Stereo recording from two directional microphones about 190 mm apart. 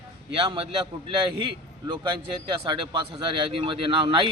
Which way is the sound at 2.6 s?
25° right (ahead or behind).